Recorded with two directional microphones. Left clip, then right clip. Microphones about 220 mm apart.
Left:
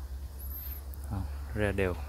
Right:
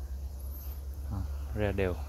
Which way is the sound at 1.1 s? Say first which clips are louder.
Left 2 dB; 5° left (ahead or behind).